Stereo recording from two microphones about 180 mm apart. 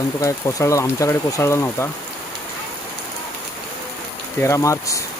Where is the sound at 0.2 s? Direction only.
15° left (ahead or behind).